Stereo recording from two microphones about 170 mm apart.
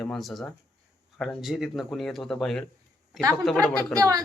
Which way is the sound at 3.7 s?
20° right (ahead or behind).